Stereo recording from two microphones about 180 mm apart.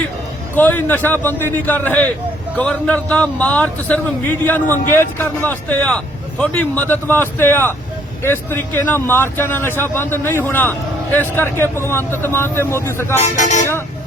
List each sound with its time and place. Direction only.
0.5 s speech: 10° left (ahead or behind)
13.1 s speech: 40° left (ahead or behind)